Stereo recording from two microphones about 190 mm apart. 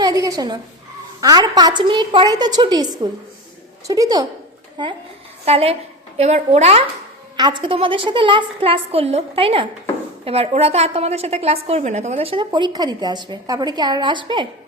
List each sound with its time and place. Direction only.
0.0 s a woman's voice: 20° right (ahead or behind)
5.5 s a woman's voice: 30° right (ahead or behind)
7.3 s a woman's voice: 25° right (ahead or behind)